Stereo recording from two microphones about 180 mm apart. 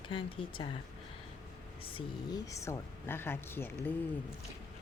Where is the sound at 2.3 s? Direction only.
15° left (ahead or behind).